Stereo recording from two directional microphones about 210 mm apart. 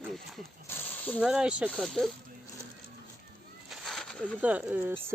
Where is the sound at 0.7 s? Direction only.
5° left (ahead or behind).